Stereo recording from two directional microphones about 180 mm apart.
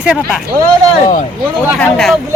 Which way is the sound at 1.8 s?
5° left (ahead or behind).